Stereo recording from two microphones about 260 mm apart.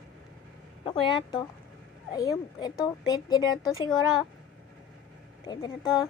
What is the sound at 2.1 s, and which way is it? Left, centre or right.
Speech, centre.